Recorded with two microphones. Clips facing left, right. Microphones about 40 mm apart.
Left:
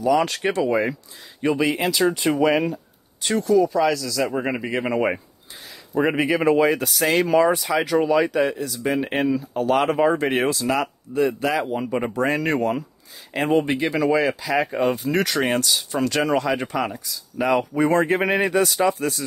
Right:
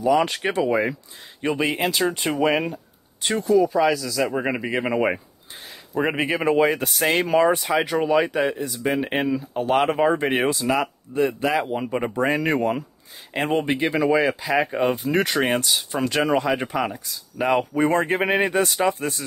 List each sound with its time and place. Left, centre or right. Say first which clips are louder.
0.0 s a man's voice: even; right
1.4 s a man's voice: left 2 dB; right
3.4 s a man's voice: even; centre
6.1 s a man's voice: left 1 dB; right
9.0 s a man's voice: left 1 dB; centre
9.6 s speech: even; right
10.3 s a man's voice: even; centre
11.1 s a man's voice: left 1 dB; right
11.4 s a man's voice: even; centre
13.3 s speech: left 2 dB; right
13.9 s a man's voice: even; centre
17.0 s a man's voice: left 1 dB; right